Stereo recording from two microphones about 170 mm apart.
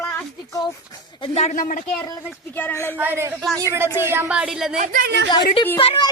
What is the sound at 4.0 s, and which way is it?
Speech, 15° right (ahead or behind).